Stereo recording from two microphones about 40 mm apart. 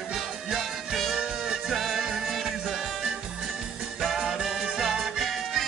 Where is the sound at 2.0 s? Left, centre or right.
Centre.